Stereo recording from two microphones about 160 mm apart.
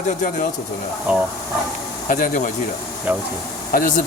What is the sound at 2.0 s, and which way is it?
Speech, 55° left (ahead or behind).